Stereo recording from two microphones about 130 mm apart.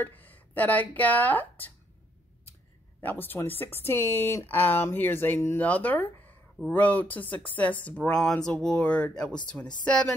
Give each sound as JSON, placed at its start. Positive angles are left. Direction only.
{"t": 0.0, "sound": "speech", "side_deg": 15}
{"t": 3.0, "sound": "speech", "side_deg": 15}